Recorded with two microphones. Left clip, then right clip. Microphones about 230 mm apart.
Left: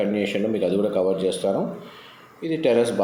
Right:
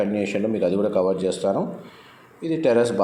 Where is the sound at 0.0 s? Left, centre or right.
Centre.